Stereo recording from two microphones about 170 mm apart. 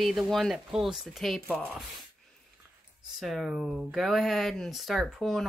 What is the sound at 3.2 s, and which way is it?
Speech, centre (ahead or behind).